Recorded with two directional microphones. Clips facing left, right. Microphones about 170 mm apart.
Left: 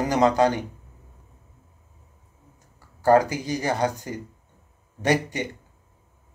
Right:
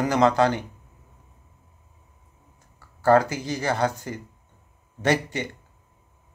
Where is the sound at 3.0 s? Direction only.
15° left (ahead or behind).